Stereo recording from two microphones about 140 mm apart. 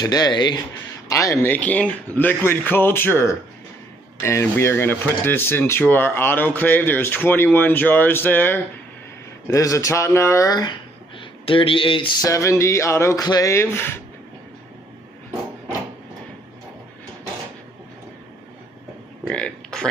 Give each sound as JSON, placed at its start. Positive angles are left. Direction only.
{"t": 0.0, "sound": "speech", "side_deg": 30}
{"t": 11.1, "sound": "speech", "side_deg": 40}
{"t": 12.3, "sound": "speech", "side_deg": 20}
{"t": 19.2, "sound": "a sound", "side_deg": 5}